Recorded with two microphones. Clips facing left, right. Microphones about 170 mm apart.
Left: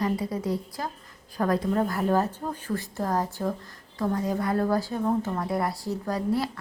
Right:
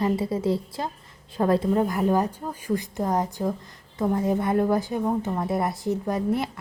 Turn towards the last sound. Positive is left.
turn(degrees=-20)  # may be behind; listen again after turning